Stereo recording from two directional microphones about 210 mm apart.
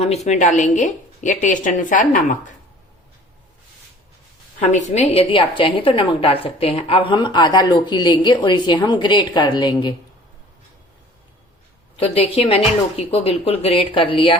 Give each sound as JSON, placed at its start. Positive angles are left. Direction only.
{"t": 0.3, "sound": "a woman's voice", "side_deg": 35}
{"t": 4.7, "sound": "a woman's voice", "side_deg": 35}
{"t": 11.9, "sound": "a woman's voice", "side_deg": 25}